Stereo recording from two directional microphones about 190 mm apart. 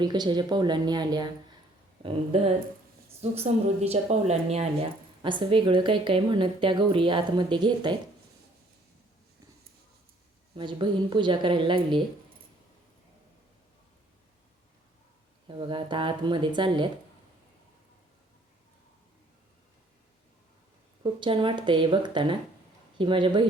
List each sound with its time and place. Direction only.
0.0 s a woman's voice: 20° right (ahead or behind)
2.3 s a woman's voice: 30° right (ahead or behind)
10.6 s a woman's voice: 25° right (ahead or behind)
15.4 s a woman's voice: 25° right (ahead or behind)
21.0 s a woman's voice: 25° right (ahead or behind)